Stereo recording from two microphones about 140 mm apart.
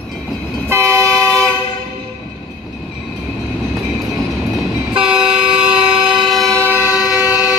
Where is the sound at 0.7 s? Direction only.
20° right (ahead or behind).